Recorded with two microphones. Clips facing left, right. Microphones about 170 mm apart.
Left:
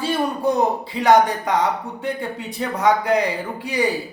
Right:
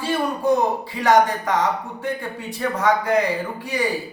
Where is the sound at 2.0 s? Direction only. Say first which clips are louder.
Left 1 dB; 20° left (ahead or behind).